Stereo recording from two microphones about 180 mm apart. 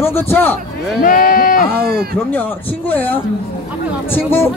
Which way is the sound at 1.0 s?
50° left (ahead or behind).